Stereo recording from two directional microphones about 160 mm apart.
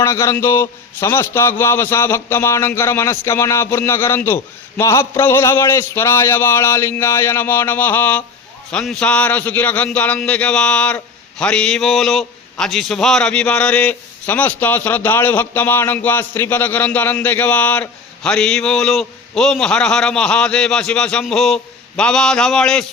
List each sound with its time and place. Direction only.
0.0 s a man's voice: 15° left (ahead or behind)